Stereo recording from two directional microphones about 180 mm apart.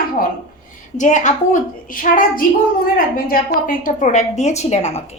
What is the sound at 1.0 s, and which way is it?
A woman's voice, 45° left (ahead or behind).